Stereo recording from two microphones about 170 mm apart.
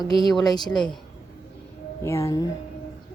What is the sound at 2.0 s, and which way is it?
Speech, 15° left (ahead or behind).